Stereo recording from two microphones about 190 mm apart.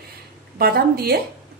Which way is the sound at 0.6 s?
55° right (ahead or behind).